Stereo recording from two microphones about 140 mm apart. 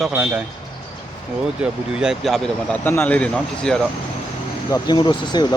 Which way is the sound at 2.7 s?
15° left (ahead or behind).